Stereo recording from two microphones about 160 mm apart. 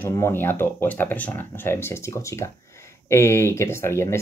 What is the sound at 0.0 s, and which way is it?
Speech, 15° left (ahead or behind).